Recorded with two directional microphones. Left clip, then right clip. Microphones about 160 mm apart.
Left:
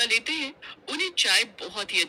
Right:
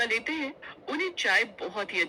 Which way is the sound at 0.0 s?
20° left (ahead or behind).